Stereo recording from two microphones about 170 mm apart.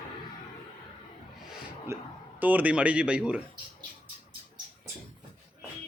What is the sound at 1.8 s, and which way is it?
Speech, 10° right (ahead or behind).